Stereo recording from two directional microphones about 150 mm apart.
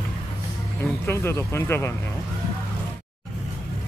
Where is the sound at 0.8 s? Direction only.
15° left (ahead or behind).